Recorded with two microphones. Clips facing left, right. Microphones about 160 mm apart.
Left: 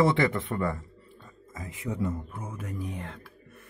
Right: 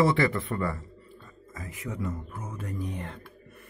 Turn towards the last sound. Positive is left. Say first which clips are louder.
# right 1 dB
turn(degrees=0)  # may be behind; listen again after turning